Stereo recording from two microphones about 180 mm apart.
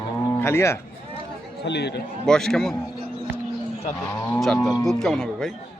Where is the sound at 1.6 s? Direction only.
70° left (ahead or behind).